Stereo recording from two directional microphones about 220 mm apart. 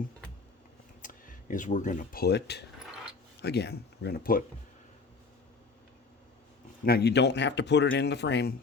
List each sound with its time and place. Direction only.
1.0 s speech: 35° left (ahead or behind)
6.8 s speech: 45° left (ahead or behind)